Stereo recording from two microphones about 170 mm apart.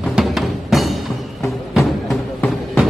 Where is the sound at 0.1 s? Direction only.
Centre (ahead or behind).